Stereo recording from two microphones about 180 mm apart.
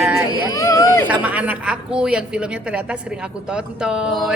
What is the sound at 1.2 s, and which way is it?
A woman's voice, 5° right (ahead or behind).